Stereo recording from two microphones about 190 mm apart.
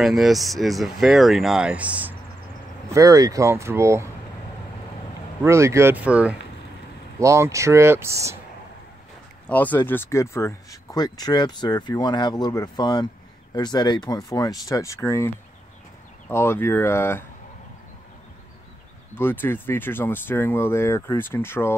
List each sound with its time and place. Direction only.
0.0 s speech: centre (ahead or behind)
5.4 s speech: 15° right (ahead or behind)
9.5 s speech: 10° left (ahead or behind)
19.1 s speech: 10° left (ahead or behind)